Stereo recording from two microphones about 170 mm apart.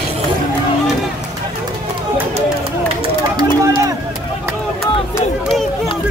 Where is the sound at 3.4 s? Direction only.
20° right (ahead or behind).